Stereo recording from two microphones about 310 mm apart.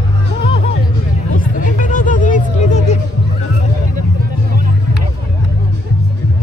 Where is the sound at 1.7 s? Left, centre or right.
Left.